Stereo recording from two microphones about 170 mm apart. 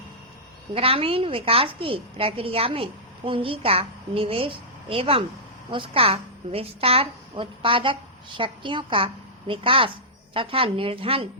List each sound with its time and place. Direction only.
0.7 s a woman's voice: 35° right (ahead or behind)